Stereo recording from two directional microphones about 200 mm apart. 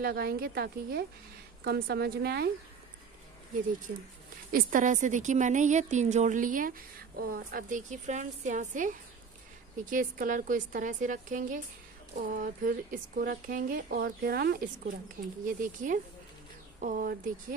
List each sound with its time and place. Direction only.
0.0 s speech: 50° right (ahead or behind)
4.5 s a woman's voice: 45° right (ahead or behind)